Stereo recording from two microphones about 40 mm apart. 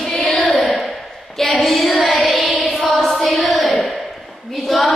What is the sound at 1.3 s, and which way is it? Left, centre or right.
Speech, centre.